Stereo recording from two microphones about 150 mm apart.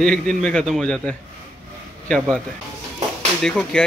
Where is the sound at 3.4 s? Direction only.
5° left (ahead or behind).